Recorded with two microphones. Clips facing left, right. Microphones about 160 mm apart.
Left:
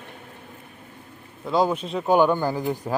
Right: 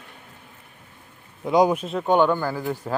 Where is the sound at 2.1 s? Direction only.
15° left (ahead or behind).